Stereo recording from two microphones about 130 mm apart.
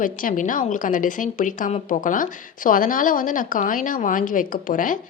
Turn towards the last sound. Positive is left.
turn(degrees=90)